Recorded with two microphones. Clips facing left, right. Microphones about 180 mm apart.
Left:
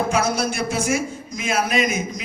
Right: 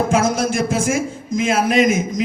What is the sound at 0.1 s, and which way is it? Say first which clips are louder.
A man's voice: right 4 dB; 90° right.